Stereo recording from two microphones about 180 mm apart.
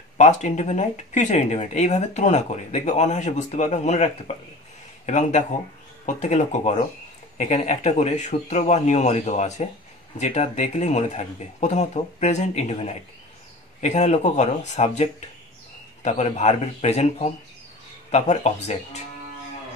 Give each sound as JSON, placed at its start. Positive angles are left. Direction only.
{"t": 0.2, "sound": "speech", "side_deg": 40}